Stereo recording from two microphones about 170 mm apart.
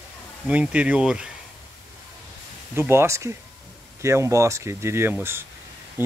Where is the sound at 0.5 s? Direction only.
10° right (ahead or behind).